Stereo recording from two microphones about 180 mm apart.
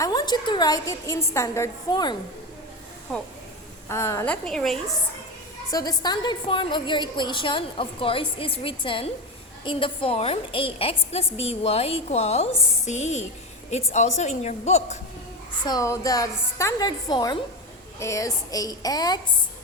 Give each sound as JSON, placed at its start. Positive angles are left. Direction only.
{"t": 0.0, "sound": "a woman's voice", "side_deg": 20}
{"t": 3.8, "sound": "a woman's voice", "side_deg": 15}
{"t": 4.4, "sound": "a woman's voice", "side_deg": 0}
{"t": 5.7, "sound": "a woman's voice", "side_deg": 20}
{"t": 15.6, "sound": "a woman's voice", "side_deg": 20}